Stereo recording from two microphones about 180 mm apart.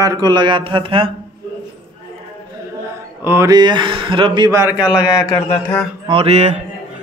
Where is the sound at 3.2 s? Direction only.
15° right (ahead or behind).